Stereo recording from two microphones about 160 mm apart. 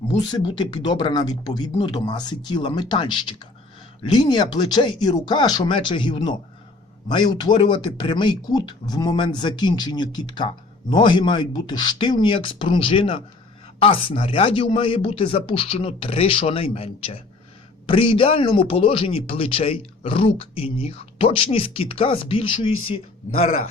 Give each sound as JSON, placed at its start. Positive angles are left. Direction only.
{"t": 0.3, "sound": "a man's voice", "side_deg": 30}